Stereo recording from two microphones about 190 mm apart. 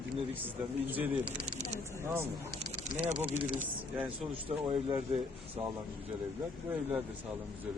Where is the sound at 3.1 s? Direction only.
25° right (ahead or behind).